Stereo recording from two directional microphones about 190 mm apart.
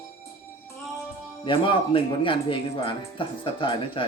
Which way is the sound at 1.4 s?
25° left (ahead or behind).